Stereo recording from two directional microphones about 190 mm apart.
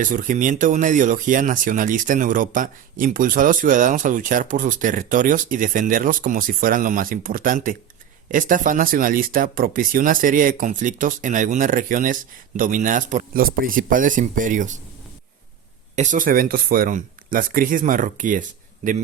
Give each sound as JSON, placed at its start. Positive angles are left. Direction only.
{"t": 0.0, "sound": "speech", "side_deg": -45}
{"t": 16.0, "sound": "speech", "side_deg": -45}